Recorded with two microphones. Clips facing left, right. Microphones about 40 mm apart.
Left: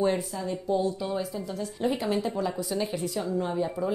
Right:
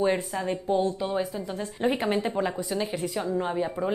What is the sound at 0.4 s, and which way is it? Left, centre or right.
A woman's voice, right.